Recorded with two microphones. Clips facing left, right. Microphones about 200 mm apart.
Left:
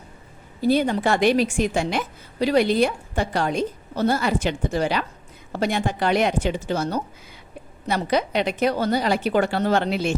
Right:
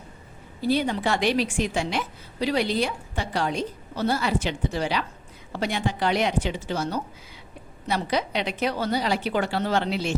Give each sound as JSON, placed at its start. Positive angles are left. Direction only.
{"t": 0.6, "sound": "a woman's voice", "side_deg": 50}